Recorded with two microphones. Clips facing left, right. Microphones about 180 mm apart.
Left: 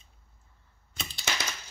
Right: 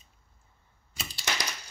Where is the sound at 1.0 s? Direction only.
10° right (ahead or behind).